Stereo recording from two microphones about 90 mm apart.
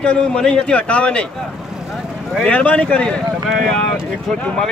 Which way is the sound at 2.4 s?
15° left (ahead or behind).